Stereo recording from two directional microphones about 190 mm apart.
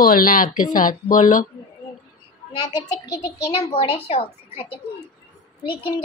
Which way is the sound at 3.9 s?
30° left (ahead or behind).